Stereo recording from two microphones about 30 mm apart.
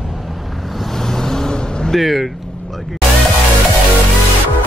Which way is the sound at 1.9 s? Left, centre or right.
Centre.